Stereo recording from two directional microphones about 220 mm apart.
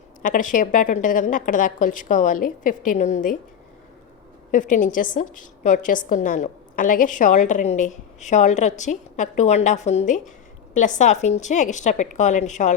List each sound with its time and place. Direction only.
0.2 s a woman's voice: 35° left (ahead or behind)
4.5 s a woman's voice: 35° left (ahead or behind)